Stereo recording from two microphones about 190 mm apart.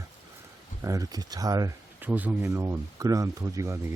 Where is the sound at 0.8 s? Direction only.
15° right (ahead or behind).